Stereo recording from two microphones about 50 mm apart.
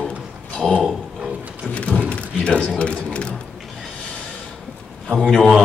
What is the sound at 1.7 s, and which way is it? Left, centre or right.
Speech, left.